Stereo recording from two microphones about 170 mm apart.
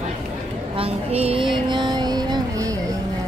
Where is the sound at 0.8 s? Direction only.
35° right (ahead or behind).